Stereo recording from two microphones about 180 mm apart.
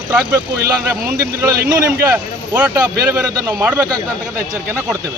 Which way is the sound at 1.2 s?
15° right (ahead or behind).